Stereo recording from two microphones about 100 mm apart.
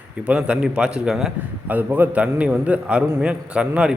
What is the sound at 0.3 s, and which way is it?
A man's voice, 10° right (ahead or behind).